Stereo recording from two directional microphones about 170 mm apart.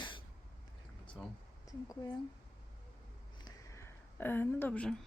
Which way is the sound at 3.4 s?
15° left (ahead or behind).